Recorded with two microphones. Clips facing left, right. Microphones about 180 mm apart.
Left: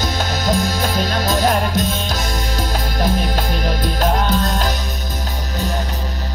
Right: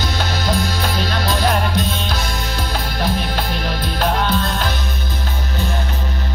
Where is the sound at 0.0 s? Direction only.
45° left (ahead or behind).